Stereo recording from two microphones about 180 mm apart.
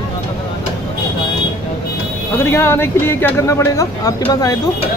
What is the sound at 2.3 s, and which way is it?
Speech, 15° left (ahead or behind).